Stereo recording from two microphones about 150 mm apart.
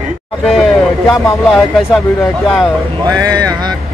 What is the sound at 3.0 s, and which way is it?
Speech, 25° right (ahead or behind).